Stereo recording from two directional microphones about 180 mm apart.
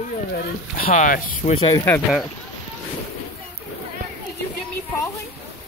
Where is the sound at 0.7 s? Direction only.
50° left (ahead or behind).